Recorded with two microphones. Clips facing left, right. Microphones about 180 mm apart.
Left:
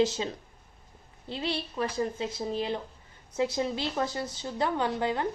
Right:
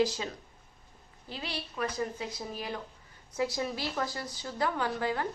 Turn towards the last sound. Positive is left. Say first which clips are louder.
# left 3 dB
turn(degrees=20)  # may be behind; listen again after turning